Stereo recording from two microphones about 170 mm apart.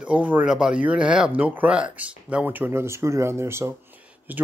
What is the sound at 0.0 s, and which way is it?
Speech, 10° right (ahead or behind).